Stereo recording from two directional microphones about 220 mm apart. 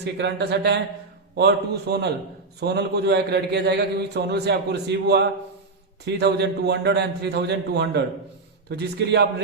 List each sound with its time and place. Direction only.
0.0 s a man's voice: 50° right (ahead or behind)